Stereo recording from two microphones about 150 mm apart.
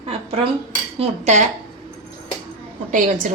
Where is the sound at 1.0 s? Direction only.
50° right (ahead or behind).